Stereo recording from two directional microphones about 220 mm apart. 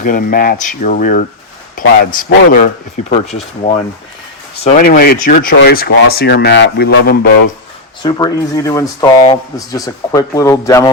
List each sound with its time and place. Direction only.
0.0 s speech: 40° left (ahead or behind)
4.8 s speech: 45° left (ahead or behind)
8.0 s a man's voice: 15° left (ahead or behind)